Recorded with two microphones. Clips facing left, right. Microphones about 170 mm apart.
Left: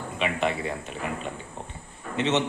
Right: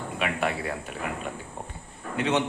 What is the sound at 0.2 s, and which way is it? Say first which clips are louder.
Speech: left 2 dB; 5° right (ahead or behind).